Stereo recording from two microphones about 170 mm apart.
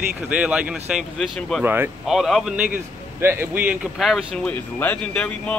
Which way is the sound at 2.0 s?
Centre (ahead or behind).